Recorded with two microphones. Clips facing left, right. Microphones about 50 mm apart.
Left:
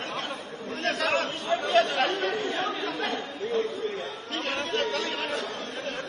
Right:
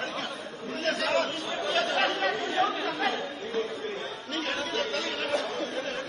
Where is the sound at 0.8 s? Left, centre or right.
Left.